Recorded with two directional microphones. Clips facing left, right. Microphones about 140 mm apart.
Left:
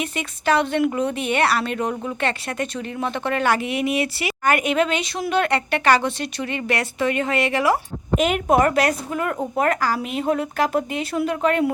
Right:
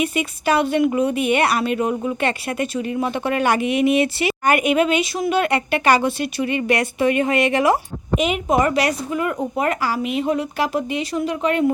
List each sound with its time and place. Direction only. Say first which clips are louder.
0.0 s speech: right 4 dB; 10° right (ahead or behind)
8.2 s a woman's voice: left 1 dB; centre (ahead or behind)
8.5 s a woman's voice: even; 55° left (ahead or behind)
9.8 s a woman's voice: right 1 dB; 10° right (ahead or behind)